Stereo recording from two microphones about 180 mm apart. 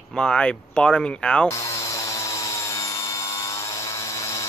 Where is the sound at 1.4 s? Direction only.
15° left (ahead or behind).